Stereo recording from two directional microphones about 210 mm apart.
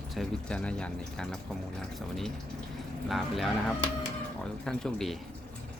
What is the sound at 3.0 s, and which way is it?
Speech, centre (ahead or behind).